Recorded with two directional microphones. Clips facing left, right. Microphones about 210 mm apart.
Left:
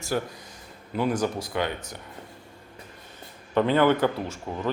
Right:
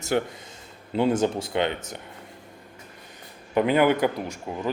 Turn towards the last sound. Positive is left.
turn(degrees=-15)  # may be behind; listen again after turning